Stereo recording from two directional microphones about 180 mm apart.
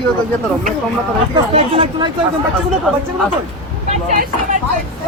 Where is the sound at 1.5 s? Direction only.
30° right (ahead or behind).